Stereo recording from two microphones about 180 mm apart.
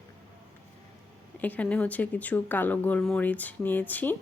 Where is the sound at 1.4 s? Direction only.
10° left (ahead or behind).